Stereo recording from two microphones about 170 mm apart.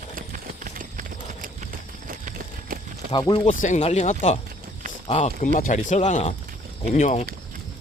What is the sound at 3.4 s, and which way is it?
Speech, 45° left (ahead or behind).